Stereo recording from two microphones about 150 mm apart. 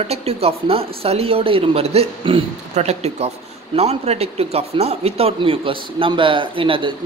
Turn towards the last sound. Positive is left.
turn(degrees=-35)  # may be behind; listen again after turning